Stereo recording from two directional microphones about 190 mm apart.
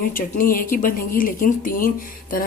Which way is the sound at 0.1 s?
45° left (ahead or behind).